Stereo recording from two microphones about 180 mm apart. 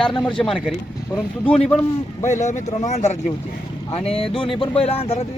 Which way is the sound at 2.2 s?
40° left (ahead or behind).